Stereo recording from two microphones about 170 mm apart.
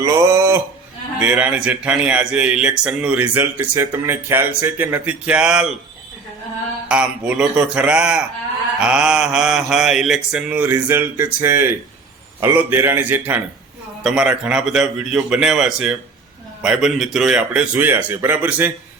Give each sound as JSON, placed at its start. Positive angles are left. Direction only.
{"t": 0.0, "sound": "a sound", "side_deg": -15}
{"t": 1.2, "sound": "a man's voice", "side_deg": -10}
{"t": 6.8, "sound": "mantra", "side_deg": -5}
{"t": 12.4, "sound": "a man's voice", "side_deg": -15}
{"t": 14.0, "sound": "mantra", "side_deg": -5}
{"t": 16.6, "sound": "a man's voice", "side_deg": 0}